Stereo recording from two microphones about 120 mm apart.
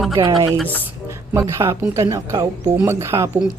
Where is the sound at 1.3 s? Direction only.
25° right (ahead or behind).